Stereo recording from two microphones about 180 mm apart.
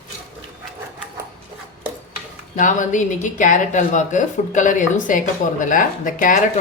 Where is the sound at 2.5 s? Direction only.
45° left (ahead or behind).